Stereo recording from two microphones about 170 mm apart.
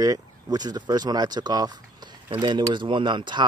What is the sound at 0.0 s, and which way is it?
Speech, 20° right (ahead or behind).